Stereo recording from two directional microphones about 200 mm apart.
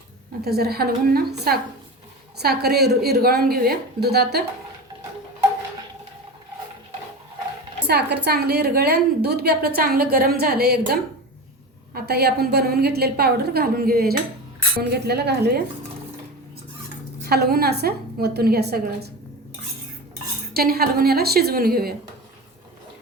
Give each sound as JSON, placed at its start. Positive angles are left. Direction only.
{"t": 0.4, "sound": "a woman's voice", "side_deg": -50}
{"t": 7.9, "sound": "a woman's voice", "side_deg": -55}
{"t": 11.9, "sound": "a woman's voice", "side_deg": -55}
{"t": 17.2, "sound": "a woman's voice", "side_deg": -50}
{"t": 20.5, "sound": "a woman's voice", "side_deg": -50}